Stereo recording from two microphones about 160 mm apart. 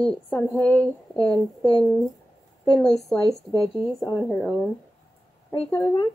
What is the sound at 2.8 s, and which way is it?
Speech, centre (ahead or behind).